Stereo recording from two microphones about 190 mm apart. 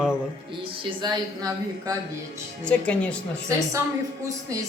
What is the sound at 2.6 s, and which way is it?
Speech, 5° left (ahead or behind).